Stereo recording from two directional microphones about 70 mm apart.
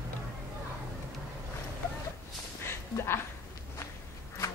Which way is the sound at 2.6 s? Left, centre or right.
Left.